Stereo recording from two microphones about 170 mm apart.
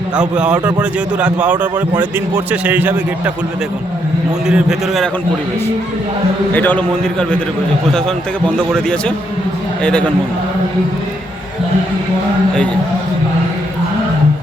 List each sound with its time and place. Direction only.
0.2 s a man's voice: 5° right (ahead or behind)
4.4 s a man's voice: 5° right (ahead or behind)
6.5 s a man's voice: 10° left (ahead or behind)